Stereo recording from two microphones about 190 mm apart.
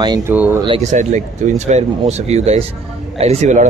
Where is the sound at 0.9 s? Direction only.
40° right (ahead or behind).